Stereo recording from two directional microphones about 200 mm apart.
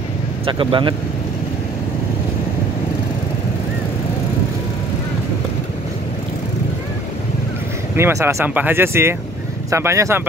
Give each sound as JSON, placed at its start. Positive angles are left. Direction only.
{"t": 0.5, "sound": "speech", "side_deg": -25}
{"t": 7.9, "sound": "speech", "side_deg": -15}